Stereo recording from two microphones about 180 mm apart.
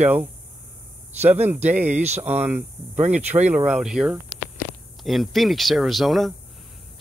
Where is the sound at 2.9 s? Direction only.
40° right (ahead or behind).